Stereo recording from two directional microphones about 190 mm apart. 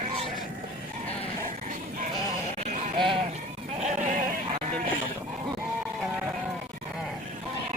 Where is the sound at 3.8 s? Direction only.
40° right (ahead or behind).